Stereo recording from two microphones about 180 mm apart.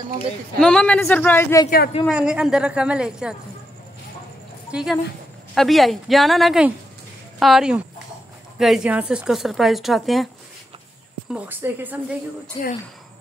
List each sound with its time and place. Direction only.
0.6 s a man's voice: 5° left (ahead or behind)
2.0 s speech: 5° right (ahead or behind)
4.6 s speech: 5° right (ahead or behind)
11.3 s a woman's voice: 10° right (ahead or behind)
12.6 s speech: 30° left (ahead or behind)